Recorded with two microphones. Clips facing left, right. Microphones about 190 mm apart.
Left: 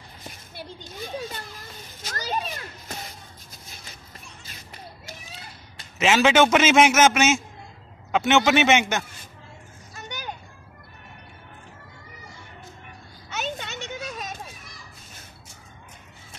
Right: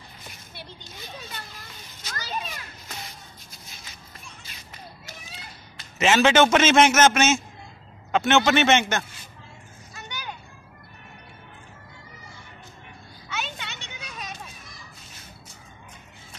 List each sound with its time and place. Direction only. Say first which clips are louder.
2.0 s children playing: left 5 dB; 45° left (ahead or behind)
5.9 s a man's voice: even; 5° left (ahead or behind)
9.9 s a sound: left 2 dB; 45° left (ahead or behind)
13.3 s children playing: left 3 dB; 45° left (ahead or behind)